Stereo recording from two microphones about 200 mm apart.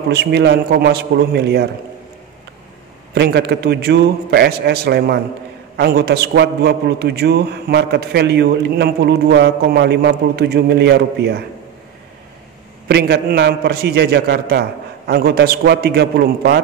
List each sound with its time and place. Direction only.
0.1 s a man's voice: 55° right (ahead or behind)
3.2 s a man's voice: 55° right (ahead or behind)
12.8 s a man's voice: 55° right (ahead or behind)